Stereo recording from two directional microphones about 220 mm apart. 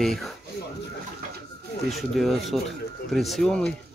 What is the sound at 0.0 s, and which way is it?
Speech, centre (ahead or behind).